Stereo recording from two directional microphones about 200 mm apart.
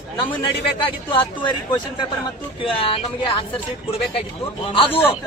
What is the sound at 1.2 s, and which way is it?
Speech, 25° left (ahead or behind).